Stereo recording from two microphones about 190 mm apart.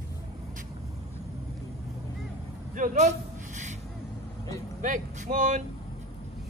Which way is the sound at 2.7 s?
40° right (ahead or behind).